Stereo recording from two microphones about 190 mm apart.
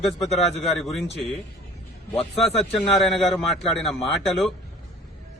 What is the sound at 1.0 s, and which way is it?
Speech, 65° left (ahead or behind).